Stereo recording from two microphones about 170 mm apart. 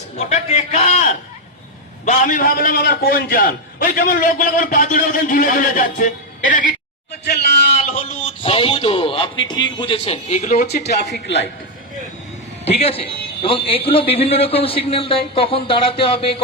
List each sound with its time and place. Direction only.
0.2 s a man's voice: 40° left (ahead or behind)
2.0 s a man's voice: 50° left (ahead or behind)
7.3 s a sound: 75° left (ahead or behind)
7.7 s a man's voice: 40° left (ahead or behind)
10.8 s speech: 80° left
12.6 s a man's voice: 35° left (ahead or behind)